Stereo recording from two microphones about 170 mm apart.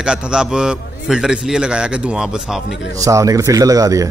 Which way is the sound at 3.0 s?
20° right (ahead or behind).